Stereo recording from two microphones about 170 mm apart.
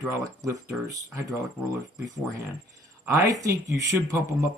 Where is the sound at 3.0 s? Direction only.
20° right (ahead or behind).